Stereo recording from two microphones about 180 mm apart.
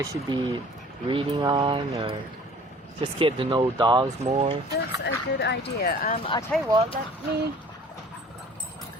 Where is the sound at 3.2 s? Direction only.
30° right (ahead or behind).